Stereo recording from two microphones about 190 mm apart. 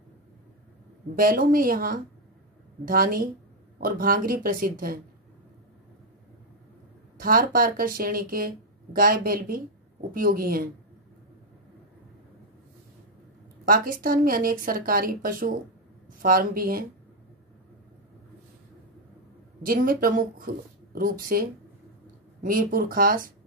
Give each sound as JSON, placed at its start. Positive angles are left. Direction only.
{"t": 1.1, "sound": "speech", "side_deg": -50}
{"t": 7.2, "sound": "speech", "side_deg": -50}
{"t": 13.7, "sound": "speech", "side_deg": -50}
{"t": 19.6, "sound": "speech", "side_deg": -50}